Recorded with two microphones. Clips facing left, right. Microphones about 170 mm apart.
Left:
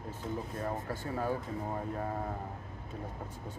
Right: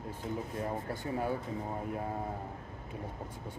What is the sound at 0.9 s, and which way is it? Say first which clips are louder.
Speech: right 1 dB; 15° right (ahead or behind).